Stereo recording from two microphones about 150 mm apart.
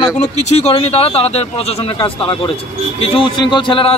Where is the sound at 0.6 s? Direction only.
45° left (ahead or behind).